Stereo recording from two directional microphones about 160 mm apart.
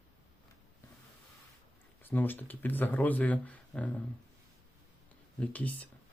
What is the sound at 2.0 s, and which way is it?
Speech, 10° left (ahead or behind).